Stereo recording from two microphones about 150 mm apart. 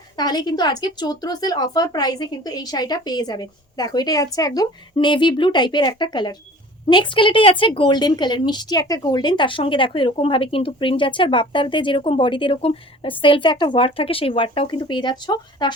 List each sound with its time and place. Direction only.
0.2 s speech: 25° left (ahead or behind)